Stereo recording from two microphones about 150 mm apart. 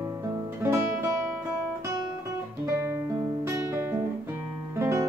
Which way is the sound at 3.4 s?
20° right (ahead or behind).